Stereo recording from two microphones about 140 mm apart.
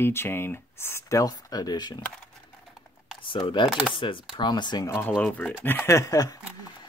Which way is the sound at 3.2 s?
35° left (ahead or behind).